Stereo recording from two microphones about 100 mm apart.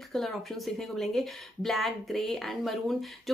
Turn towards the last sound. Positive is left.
turn(degrees=0)  # may be behind; listen again after turning